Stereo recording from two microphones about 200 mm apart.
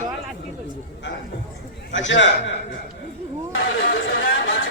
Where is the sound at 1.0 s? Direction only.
65° left (ahead or behind).